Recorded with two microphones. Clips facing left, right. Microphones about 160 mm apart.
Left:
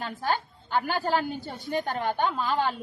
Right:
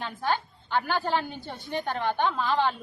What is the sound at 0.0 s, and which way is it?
A woman's voice, 40° left (ahead or behind).